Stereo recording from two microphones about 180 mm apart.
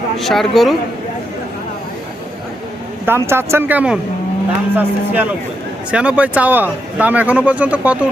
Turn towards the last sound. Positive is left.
turn(degrees=-10)  # may be behind; listen again after turning